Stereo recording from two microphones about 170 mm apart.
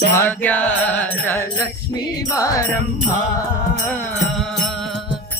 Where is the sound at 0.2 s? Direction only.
10° left (ahead or behind).